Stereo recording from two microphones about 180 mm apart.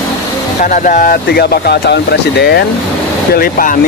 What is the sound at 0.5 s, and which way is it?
Speech, 45° left (ahead or behind).